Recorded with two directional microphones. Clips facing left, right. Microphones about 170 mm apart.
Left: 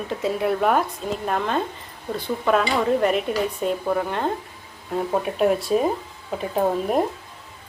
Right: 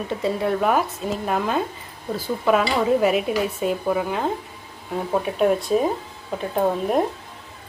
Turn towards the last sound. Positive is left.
turn(degrees=0)  # may be behind; listen again after turning